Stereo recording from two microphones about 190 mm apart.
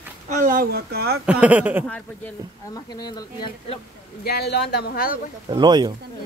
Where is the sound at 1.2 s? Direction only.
5° right (ahead or behind).